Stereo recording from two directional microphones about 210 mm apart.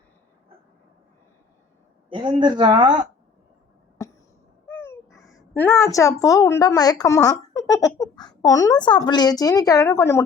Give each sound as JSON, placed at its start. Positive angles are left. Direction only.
{"t": 2.0, "sound": "speech", "side_deg": -25}
{"t": 4.0, "sound": "a sound", "side_deg": 15}
{"t": 4.6, "sound": "dog", "side_deg": 10}
{"t": 5.4, "sound": "a woman's voice", "side_deg": 10}